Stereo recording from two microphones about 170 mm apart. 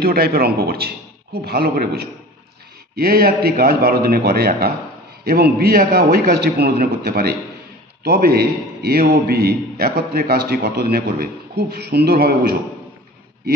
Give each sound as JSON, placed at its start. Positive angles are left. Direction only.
{"t": 0.0, "sound": "a man's voice", "side_deg": -65}